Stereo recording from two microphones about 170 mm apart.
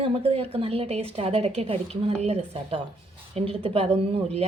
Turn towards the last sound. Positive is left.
turn(degrees=-35)  # may be behind; listen again after turning